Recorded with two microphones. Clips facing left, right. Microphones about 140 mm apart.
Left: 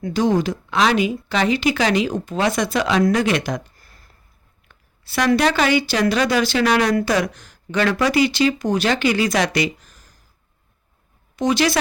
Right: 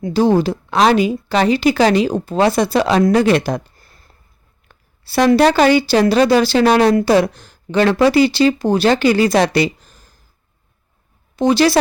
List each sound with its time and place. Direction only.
0.0 s speech: 30° right (ahead or behind)
11.3 s speech: 35° right (ahead or behind)